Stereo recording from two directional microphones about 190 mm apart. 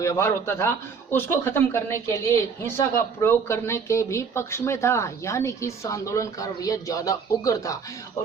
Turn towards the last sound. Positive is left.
turn(degrees=15)  # may be behind; listen again after turning